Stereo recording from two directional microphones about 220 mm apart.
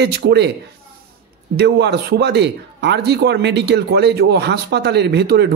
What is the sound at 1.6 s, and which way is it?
Speech, 50° right (ahead or behind).